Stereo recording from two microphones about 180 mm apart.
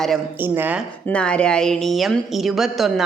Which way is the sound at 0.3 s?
10° right (ahead or behind).